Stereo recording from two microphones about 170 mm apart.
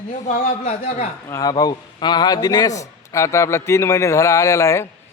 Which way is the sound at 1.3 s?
20° left (ahead or behind).